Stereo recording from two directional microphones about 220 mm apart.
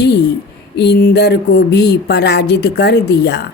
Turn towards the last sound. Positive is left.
turn(degrees=50)  # may be behind; listen again after turning